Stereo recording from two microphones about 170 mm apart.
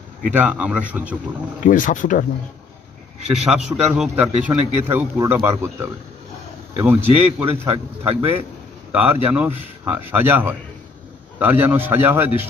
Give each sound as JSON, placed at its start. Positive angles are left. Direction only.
{"t": 0.3, "sound": "speech", "side_deg": -10}
{"t": 1.6, "sound": "speech", "side_deg": 50}
{"t": 3.5, "sound": "a man's voice", "side_deg": 0}
{"t": 7.7, "sound": "speech", "side_deg": -35}
{"t": 8.9, "sound": "speech", "side_deg": -10}